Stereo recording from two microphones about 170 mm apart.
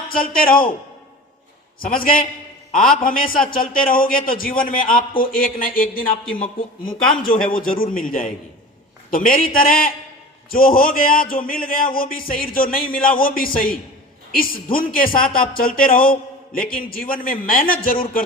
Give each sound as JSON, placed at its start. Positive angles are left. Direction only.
{"t": 0.1, "sound": "a man's voice", "side_deg": 55}
{"t": 1.8, "sound": "a man's voice", "side_deg": 55}
{"t": 7.5, "sound": "a man's voice", "side_deg": 55}